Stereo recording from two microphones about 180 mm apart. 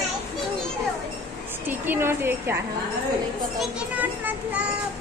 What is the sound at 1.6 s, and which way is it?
Speech, 10° right (ahead or behind).